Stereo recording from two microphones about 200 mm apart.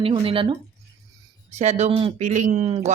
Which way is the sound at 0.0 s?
25° right (ahead or behind).